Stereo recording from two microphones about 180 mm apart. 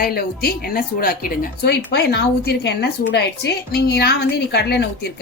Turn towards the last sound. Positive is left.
turn(degrees=65)  # may be behind; listen again after turning